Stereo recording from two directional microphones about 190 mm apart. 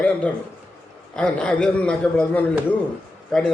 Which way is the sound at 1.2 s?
5° left (ahead or behind).